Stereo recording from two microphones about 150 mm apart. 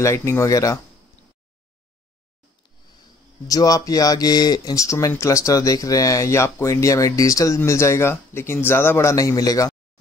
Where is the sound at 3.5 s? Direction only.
25° left (ahead or behind).